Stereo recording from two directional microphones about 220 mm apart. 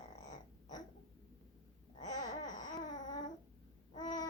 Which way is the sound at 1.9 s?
35° left (ahead or behind).